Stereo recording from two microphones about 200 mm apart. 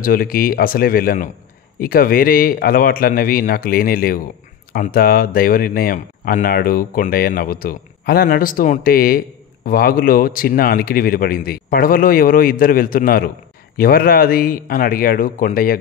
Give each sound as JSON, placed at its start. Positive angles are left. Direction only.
{"t": 0.0, "sound": "speech", "side_deg": 45}